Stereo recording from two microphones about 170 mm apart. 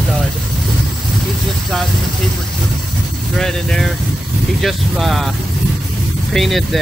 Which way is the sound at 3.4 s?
Centre (ahead or behind).